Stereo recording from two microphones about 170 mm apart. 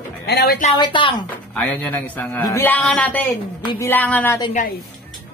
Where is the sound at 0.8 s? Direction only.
30° left (ahead or behind).